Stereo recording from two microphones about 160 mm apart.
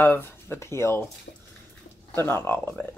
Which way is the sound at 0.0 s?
15° left (ahead or behind).